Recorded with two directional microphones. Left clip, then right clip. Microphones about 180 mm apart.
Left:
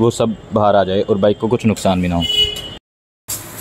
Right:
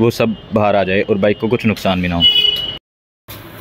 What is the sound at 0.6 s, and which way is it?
Speech, 5° left (ahead or behind).